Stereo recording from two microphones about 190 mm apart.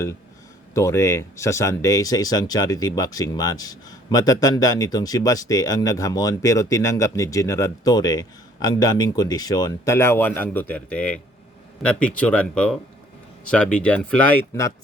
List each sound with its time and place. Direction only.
0.7 s speech: 15° left (ahead or behind)